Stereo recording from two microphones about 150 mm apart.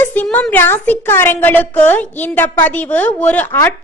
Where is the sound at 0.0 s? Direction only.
10° left (ahead or behind).